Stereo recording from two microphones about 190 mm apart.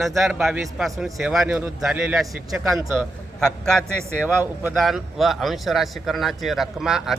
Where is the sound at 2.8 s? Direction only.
15° right (ahead or behind).